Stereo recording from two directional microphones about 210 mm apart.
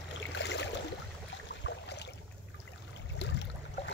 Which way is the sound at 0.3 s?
55° left (ahead or behind).